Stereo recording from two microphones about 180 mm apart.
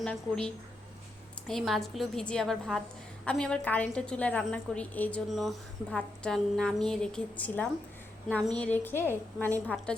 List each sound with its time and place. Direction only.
0.0 s a woman's voice: 5° left (ahead or behind)